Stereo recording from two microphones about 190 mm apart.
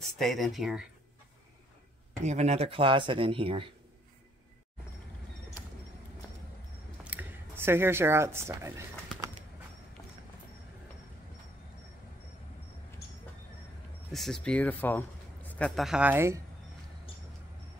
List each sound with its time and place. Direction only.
0.2 s speech: centre (ahead or behind)
2.2 s speech: 35° right (ahead or behind)
7.1 s speech: 10° right (ahead or behind)
14.1 s speech: centre (ahead or behind)